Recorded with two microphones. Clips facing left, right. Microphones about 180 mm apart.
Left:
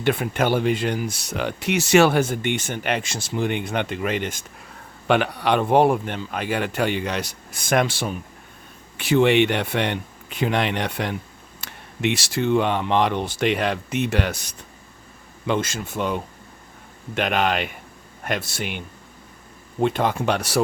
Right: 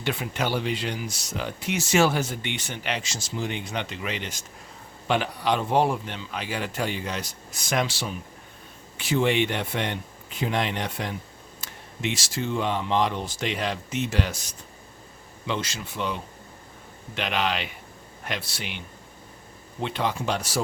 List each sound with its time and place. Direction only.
0.0 s speech: 55° left (ahead or behind)
5.0 s speech: 65° left (ahead or behind)
9.0 s speech: 65° left (ahead or behind)
15.4 s a man's voice: 50° left (ahead or behind)
19.8 s speech: 50° left (ahead or behind); by 20.6 s 65° left (ahead or behind)